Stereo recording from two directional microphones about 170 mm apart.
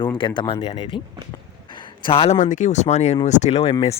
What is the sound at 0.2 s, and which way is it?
Speech, 30° left (ahead or behind).